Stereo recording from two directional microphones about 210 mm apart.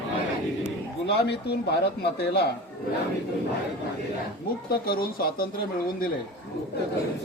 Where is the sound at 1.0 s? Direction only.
50° left (ahead or behind).